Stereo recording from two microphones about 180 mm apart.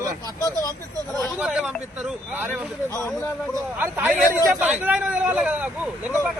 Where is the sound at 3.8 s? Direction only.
10° right (ahead or behind).